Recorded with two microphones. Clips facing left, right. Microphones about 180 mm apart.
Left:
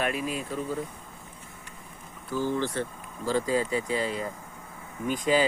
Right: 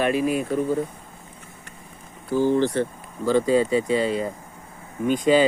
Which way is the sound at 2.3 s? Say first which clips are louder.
Right 8 dB; 20° right (ahead or behind).